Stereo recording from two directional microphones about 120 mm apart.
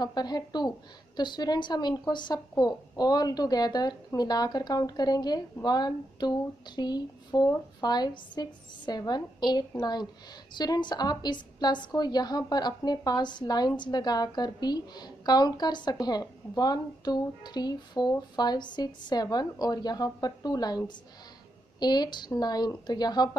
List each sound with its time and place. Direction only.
0.0 s a woman's voice: 35° left (ahead or behind)